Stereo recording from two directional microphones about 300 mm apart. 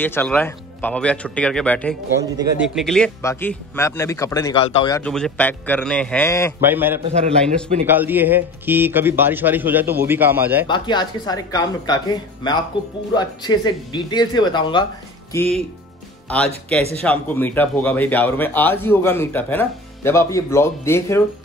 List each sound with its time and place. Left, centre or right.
0.0 s speech: centre
6.6 s speech: centre
10.7 s speech: centre